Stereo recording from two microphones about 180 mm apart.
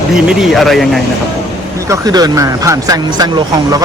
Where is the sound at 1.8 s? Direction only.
20° right (ahead or behind).